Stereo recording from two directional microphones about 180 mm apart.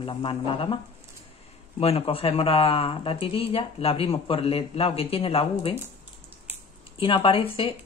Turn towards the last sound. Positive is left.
turn(degrees=30)  # may be behind; listen again after turning